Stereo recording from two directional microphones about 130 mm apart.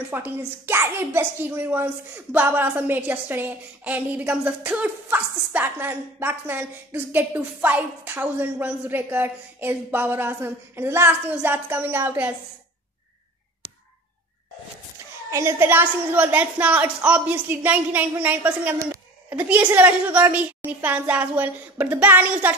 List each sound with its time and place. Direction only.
0.1 s a woman's voice: 15° right (ahead or behind)
15.3 s a woman's voice: 20° right (ahead or behind)
18.8 s a sound: 25° right (ahead or behind)
19.3 s a woman's voice: 10° right (ahead or behind)